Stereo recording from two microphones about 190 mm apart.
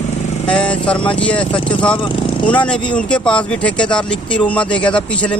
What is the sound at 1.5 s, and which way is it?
Speech, 25° left (ahead or behind).